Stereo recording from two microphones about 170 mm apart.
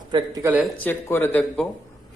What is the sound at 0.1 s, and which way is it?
Speech, 25° right (ahead or behind).